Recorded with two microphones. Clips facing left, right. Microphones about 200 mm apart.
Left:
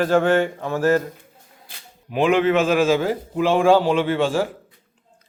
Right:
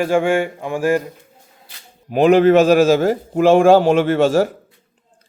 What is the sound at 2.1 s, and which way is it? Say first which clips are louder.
A man's voice: right 6 dB; 40° right (ahead or behind).